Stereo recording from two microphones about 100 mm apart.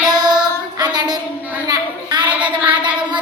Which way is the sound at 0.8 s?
40° right (ahead or behind).